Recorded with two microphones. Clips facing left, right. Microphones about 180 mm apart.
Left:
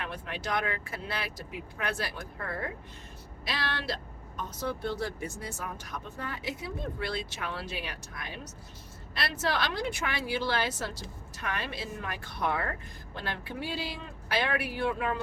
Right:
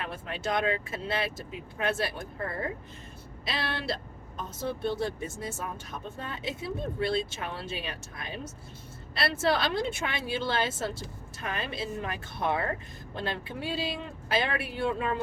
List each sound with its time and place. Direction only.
0.1 s speech: 25° right (ahead or behind)